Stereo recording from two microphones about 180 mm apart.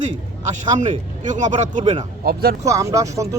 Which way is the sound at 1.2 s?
45° right (ahead or behind).